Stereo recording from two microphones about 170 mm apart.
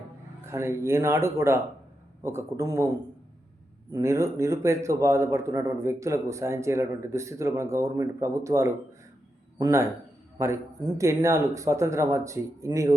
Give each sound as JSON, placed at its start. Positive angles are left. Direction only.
{"t": 0.4, "sound": "speech", "side_deg": -15}